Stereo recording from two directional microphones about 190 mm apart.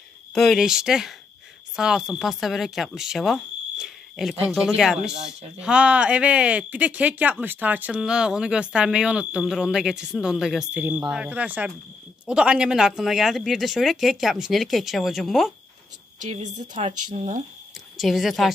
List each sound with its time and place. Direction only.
0.3 s speech: centre (ahead or behind)
16.2 s speech: 40° right (ahead or behind)
17.9 s speech: centre (ahead or behind)